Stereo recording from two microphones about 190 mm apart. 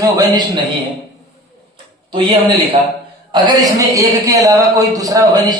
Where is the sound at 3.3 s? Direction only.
20° right (ahead or behind).